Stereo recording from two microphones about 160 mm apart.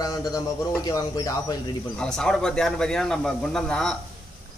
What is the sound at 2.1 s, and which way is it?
A man's voice, 5° left (ahead or behind).